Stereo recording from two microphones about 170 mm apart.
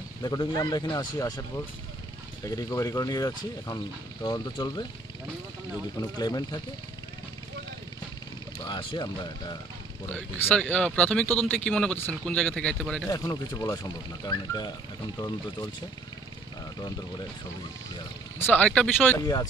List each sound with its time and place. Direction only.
0.2 s speech: 25° left (ahead or behind)
2.4 s speech: 20° left (ahead or behind)
6.1 s speech: 25° left (ahead or behind)
8.5 s speech: 25° left (ahead or behind)
10.0 s speech: 10° left (ahead or behind)
13.1 s speech: 20° left (ahead or behind)
18.4 s speech: 10° left (ahead or behind)